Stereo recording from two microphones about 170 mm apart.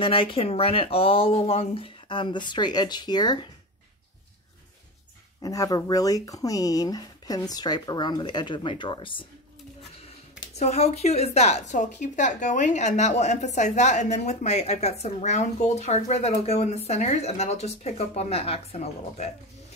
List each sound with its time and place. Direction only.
0.0 s a woman's voice: 30° left (ahead or behind)
5.4 s speech: 20° left (ahead or behind)
10.6 s a woman's voice: 40° left (ahead or behind)